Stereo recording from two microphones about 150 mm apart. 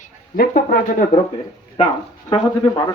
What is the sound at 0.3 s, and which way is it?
Speech, 70° left (ahead or behind).